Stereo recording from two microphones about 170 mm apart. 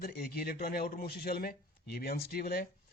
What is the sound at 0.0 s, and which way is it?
Speech, 60° left (ahead or behind).